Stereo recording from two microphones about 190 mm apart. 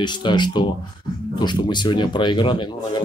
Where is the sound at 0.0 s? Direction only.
25° left (ahead or behind).